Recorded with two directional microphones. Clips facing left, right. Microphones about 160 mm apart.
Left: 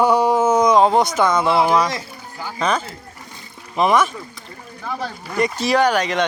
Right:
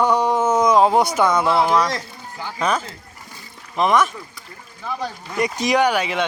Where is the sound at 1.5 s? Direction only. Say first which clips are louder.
Left 1 dB; 5° left (ahead or behind).